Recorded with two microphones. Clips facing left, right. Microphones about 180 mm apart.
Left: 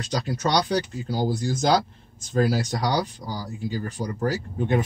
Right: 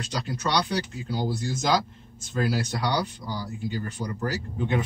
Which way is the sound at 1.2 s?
35° left (ahead or behind).